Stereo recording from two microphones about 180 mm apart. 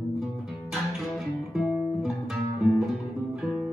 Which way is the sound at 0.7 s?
Centre (ahead or behind).